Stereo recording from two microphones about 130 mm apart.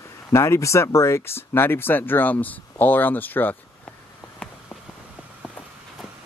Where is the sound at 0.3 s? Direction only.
20° left (ahead or behind).